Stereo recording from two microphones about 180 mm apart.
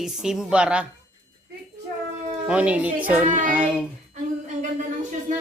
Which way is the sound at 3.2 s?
45° right (ahead or behind).